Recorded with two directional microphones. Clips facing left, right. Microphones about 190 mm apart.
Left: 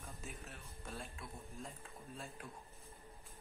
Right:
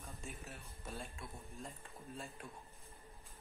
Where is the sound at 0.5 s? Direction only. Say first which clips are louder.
Right 1 dB; centre (ahead or behind).